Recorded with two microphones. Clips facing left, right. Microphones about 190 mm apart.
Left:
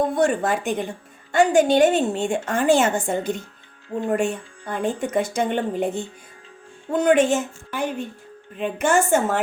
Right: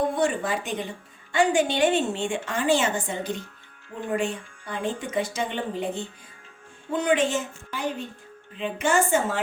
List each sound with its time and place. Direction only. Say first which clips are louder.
0.2 s a woman's voice: left 5 dB; 50° left (ahead or behind)